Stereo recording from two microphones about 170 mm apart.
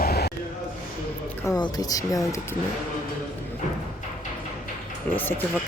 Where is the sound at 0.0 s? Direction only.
70° left (ahead or behind).